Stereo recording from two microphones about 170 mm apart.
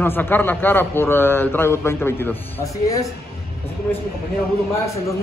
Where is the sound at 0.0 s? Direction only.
10° left (ahead or behind).